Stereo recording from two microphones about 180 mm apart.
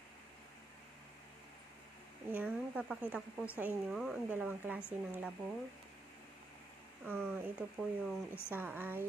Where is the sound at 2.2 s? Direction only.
10° right (ahead or behind).